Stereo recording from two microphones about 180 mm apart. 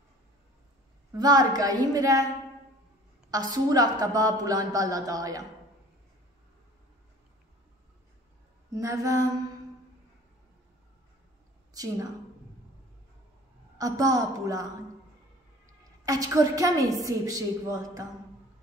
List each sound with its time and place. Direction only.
1.1 s a woman's voice: 20° right (ahead or behind)
3.3 s a woman's voice: 20° right (ahead or behind)
8.7 s a woman's voice: 20° right (ahead or behind)
11.7 s a woman's voice: 20° right (ahead or behind)
13.7 s a woman's voice: 20° right (ahead or behind)
16.1 s a woman's voice: 20° right (ahead or behind)